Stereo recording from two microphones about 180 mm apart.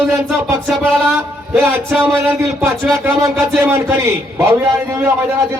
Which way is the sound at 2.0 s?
15° right (ahead or behind).